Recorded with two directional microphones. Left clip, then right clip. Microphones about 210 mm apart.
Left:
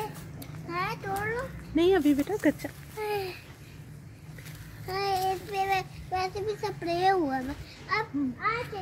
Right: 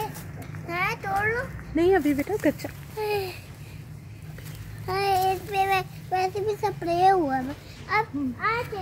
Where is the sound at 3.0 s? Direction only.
50° right (ahead or behind).